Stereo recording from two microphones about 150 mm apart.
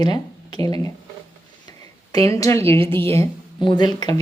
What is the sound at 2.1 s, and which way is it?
Speech, 20° left (ahead or behind).